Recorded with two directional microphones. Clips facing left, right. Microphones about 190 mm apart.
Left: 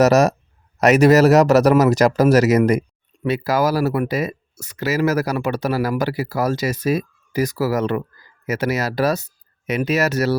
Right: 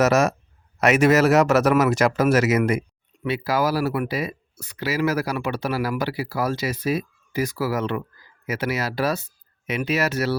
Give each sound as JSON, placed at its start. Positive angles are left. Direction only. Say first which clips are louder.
{"t": 0.0, "sound": "speech", "louder": "left 4 dB", "side_deg": 40}